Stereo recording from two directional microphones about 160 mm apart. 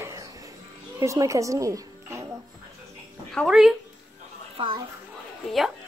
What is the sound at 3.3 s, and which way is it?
Speech, 5° right (ahead or behind).